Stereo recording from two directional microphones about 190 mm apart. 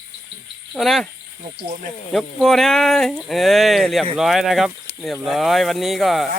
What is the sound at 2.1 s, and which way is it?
Speech, centre (ahead or behind).